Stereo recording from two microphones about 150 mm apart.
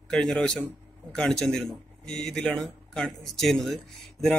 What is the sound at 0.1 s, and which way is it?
Speech, 5° left (ahead or behind).